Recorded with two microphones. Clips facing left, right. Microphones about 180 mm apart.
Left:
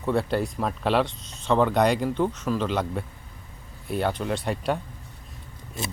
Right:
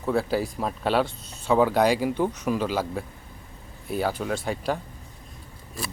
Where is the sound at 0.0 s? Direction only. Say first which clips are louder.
Even; centre (ahead or behind).